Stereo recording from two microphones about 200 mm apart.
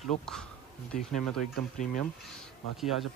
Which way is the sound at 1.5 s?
40° left (ahead or behind).